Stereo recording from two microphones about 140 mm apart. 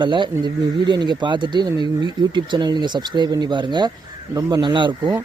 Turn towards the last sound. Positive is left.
turn(degrees=-35)  # may be behind; listen again after turning